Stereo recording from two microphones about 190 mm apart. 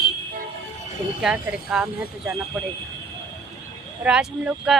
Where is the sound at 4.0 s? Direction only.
5° right (ahead or behind).